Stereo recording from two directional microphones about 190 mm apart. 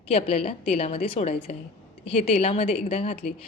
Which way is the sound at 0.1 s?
35° left (ahead or behind).